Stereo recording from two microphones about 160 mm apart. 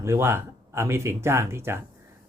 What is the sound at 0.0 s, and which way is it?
Speech, 15° right (ahead or behind).